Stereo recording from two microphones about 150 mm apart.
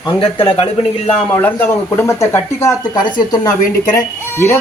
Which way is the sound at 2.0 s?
20° left (ahead or behind).